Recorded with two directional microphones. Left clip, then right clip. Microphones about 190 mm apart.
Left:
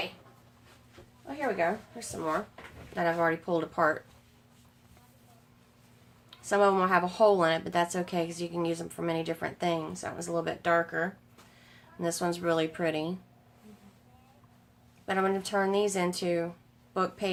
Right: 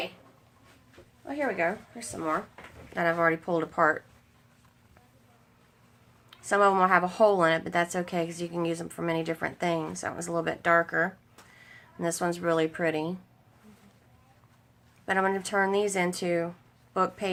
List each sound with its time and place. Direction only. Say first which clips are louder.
1.5 s a woman's voice: right 1 dB; 15° right (ahead or behind)
6.3 s a woman's voice: right 2 dB; 15° right (ahead or behind)
15.0 s a woman's voice: right 2 dB; 20° right (ahead or behind)